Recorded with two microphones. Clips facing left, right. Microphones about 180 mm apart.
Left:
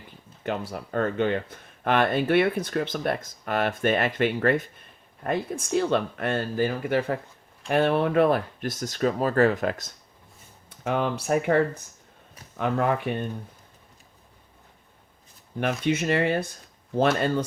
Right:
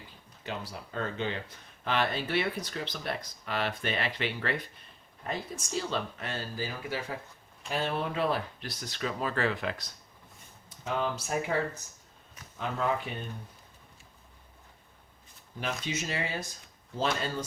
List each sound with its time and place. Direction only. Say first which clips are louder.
0.7 s speech: left 9 dB; 55° left (ahead or behind)
10.7 s speech: left 6 dB; 60° left (ahead or behind)
15.6 s speech: left 10 dB; 60° left (ahead or behind)